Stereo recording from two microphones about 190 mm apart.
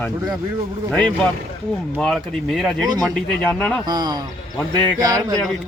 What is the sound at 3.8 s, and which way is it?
Speech, 20° right (ahead or behind).